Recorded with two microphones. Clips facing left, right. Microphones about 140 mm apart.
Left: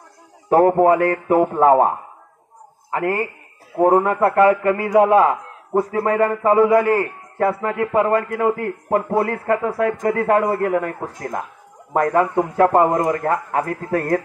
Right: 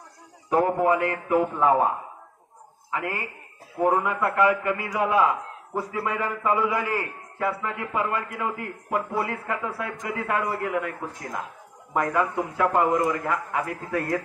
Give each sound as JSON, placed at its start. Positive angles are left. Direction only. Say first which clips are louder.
{"t": 0.5, "sound": "a man's voice", "louder": "left 8 dB", "side_deg": 45}